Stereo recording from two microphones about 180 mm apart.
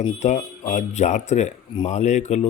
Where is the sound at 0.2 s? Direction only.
40° left (ahead or behind).